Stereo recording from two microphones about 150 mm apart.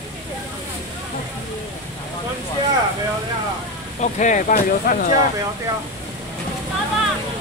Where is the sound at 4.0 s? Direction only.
55° left (ahead or behind); by 5.2 s 70° left (ahead or behind).